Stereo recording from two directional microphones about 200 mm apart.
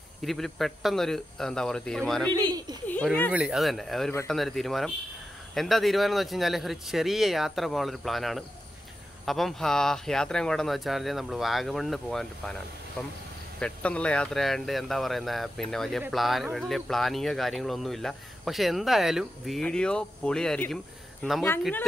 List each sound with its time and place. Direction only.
0.2 s speech: centre (ahead or behind)
2.5 s a sound: 20° right (ahead or behind)
2.9 s speech: 5° left (ahead or behind)
3.3 s speech: 5° right (ahead or behind)
13.6 s speech: 5° left (ahead or behind)